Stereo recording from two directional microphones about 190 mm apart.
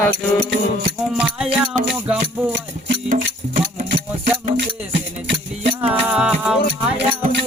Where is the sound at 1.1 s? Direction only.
5° right (ahead or behind).